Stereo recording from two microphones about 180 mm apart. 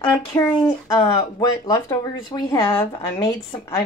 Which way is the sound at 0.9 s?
20° left (ahead or behind).